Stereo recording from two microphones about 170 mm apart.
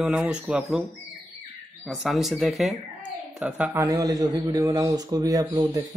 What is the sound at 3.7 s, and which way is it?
A man's voice, 20° right (ahead or behind).